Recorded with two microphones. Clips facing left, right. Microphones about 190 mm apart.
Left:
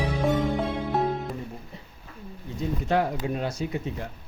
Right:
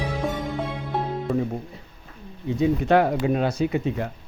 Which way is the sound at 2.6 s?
70° right (ahead or behind).